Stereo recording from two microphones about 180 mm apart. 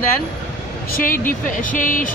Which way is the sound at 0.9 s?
50° left (ahead or behind).